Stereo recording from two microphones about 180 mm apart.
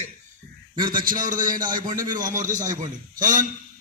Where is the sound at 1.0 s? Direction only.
50° right (ahead or behind).